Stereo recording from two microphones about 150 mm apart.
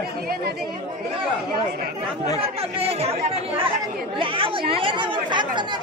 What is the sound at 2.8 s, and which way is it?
Speech, 45° right (ahead or behind).